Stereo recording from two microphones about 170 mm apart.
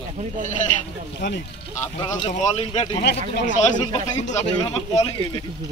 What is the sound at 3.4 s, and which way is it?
A man's voice, 45° left (ahead or behind).